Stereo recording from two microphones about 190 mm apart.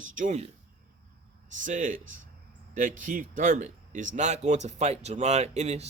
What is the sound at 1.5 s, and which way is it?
Speech, 45° right (ahead or behind).